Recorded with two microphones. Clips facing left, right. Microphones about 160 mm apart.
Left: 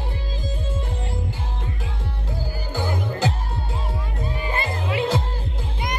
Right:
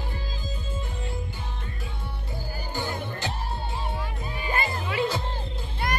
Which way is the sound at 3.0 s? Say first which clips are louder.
Left 8 dB; 90° left.